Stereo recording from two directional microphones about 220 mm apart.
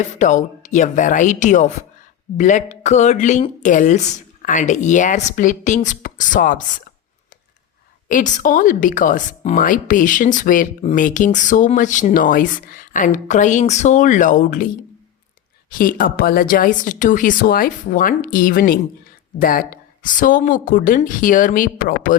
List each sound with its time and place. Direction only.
0.0 s speech: 35° left (ahead or behind)
8.0 s speech: 35° left (ahead or behind)
15.7 s speech: 40° left (ahead or behind)